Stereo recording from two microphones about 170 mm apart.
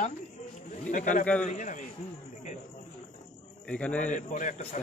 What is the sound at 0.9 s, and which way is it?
Speech, 45° left (ahead or behind).